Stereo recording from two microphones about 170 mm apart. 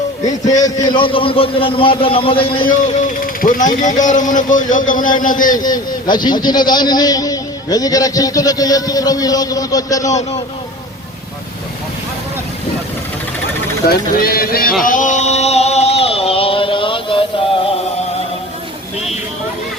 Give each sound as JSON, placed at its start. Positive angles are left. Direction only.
{"t": 0.6, "sound": "a man's voice", "side_deg": 25}
{"t": 2.6, "sound": "speech", "side_deg": 50}
{"t": 5.5, "sound": "a man's voice", "side_deg": 25}
{"t": 13.8, "sound": "speech", "side_deg": 60}
{"t": 14.8, "sound": "chant", "side_deg": 50}